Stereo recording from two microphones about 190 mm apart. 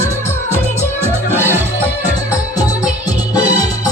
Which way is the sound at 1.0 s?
10° right (ahead or behind).